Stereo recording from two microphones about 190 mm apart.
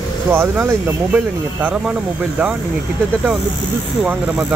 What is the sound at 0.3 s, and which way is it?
Speech, 10° right (ahead or behind).